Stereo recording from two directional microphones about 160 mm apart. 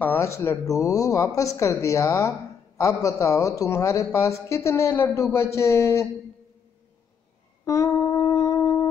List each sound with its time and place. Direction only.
0.0 s a woman's voice: 15° left (ahead or behind)
7.6 s humming: 20° left (ahead or behind)